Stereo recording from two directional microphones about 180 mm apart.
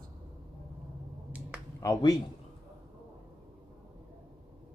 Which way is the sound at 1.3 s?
5° right (ahead or behind).